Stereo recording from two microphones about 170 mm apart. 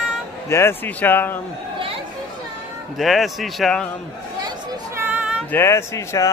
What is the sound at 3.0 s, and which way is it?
Speech, centre (ahead or behind).